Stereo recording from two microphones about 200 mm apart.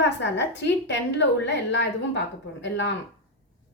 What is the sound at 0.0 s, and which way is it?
A woman's voice, 60° left (ahead or behind).